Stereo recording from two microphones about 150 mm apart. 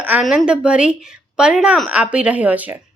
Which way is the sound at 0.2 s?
5° right (ahead or behind).